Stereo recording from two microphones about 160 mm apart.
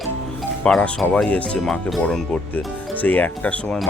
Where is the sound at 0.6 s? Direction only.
5° left (ahead or behind).